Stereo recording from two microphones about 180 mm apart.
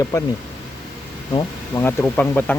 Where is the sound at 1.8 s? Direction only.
10° left (ahead or behind).